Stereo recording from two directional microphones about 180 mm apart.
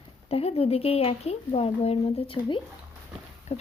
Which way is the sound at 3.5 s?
35° left (ahead or behind).